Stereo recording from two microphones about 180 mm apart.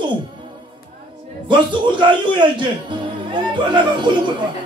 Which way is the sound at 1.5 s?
25° right (ahead or behind).